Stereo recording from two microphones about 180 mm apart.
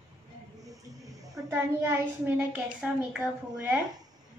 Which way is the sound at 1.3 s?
15° right (ahead or behind).